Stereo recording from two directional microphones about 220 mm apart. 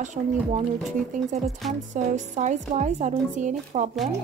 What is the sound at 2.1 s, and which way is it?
Speech, 35° right (ahead or behind).